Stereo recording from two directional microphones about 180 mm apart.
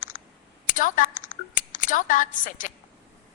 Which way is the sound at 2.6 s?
45° left (ahead or behind).